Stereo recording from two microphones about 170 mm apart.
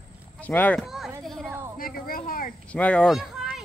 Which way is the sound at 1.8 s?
60° left (ahead or behind).